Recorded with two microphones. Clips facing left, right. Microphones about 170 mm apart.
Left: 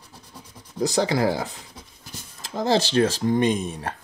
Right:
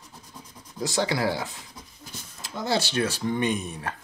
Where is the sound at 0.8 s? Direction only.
40° left (ahead or behind).